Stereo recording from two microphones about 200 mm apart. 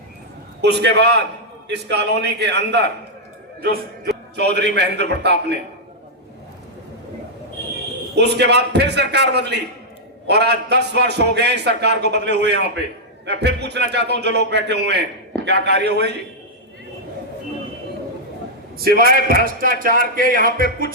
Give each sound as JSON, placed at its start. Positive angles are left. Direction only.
{"t": 0.6, "sound": "a man's voice", "side_deg": -55}
{"t": 8.1, "sound": "a man's voice", "side_deg": -55}
{"t": 18.8, "sound": "a man's voice", "side_deg": -50}